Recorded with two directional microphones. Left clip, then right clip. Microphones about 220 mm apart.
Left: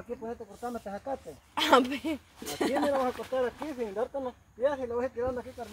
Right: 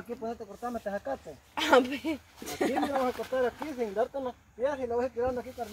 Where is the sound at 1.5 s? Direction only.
45° left (ahead or behind).